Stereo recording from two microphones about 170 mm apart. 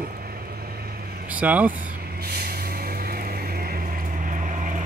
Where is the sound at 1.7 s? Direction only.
55° right (ahead or behind).